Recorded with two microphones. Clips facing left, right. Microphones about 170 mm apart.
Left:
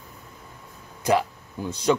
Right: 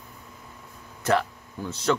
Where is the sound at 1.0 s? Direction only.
15° left (ahead or behind).